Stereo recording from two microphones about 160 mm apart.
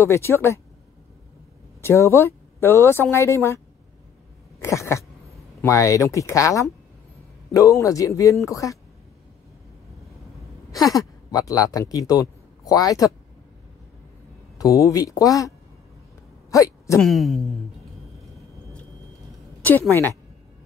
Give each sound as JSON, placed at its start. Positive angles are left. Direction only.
{"t": 0.0, "sound": "speech", "side_deg": 15}
{"t": 1.8, "sound": "speech", "side_deg": 15}
{"t": 10.7, "sound": "speech", "side_deg": 20}
{"t": 14.6, "sound": "speech", "side_deg": 20}
{"t": 16.4, "sound": "a sound", "side_deg": 20}
{"t": 17.0, "sound": "speech", "side_deg": 0}